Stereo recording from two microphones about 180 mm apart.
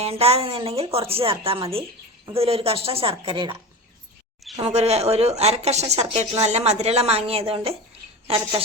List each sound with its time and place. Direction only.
0.0 s a woman's voice: 35° right (ahead or behind)
4.6 s a woman's voice: 35° right (ahead or behind)